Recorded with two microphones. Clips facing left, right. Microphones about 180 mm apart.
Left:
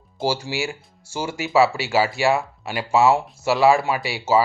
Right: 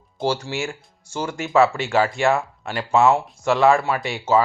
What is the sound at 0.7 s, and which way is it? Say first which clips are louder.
Speech: even; 10° left (ahead or behind).